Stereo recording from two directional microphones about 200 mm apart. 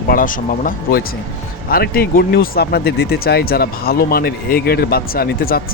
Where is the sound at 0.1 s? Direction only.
40° left (ahead or behind).